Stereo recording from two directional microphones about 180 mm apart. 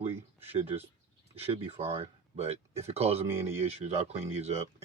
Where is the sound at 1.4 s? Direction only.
35° right (ahead or behind).